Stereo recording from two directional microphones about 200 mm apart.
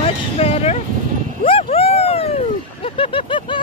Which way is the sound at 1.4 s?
30° left (ahead or behind).